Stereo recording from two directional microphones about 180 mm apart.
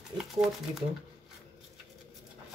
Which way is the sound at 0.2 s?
5° right (ahead or behind).